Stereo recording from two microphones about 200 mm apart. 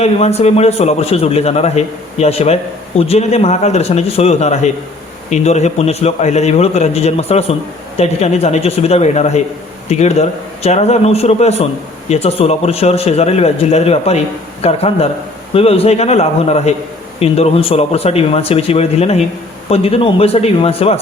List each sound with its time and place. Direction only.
0.0 s a man's voice: 30° left (ahead or behind)